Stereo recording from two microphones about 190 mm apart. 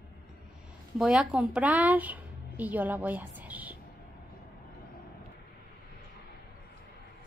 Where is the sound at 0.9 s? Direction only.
5° right (ahead or behind).